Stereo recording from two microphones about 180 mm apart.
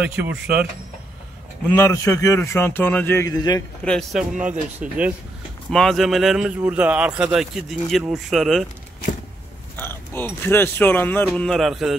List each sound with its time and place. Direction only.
1.7 s a man's voice: 15° left (ahead or behind)
3.8 s speech: centre (ahead or behind)
9.8 s speech: 10° left (ahead or behind)